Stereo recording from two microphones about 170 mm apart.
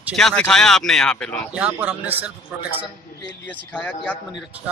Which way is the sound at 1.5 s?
10° right (ahead or behind).